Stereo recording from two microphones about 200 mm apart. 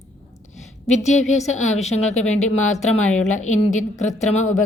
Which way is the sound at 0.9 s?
35° left (ahead or behind).